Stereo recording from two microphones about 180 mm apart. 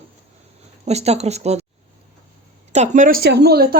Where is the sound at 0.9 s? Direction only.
35° right (ahead or behind).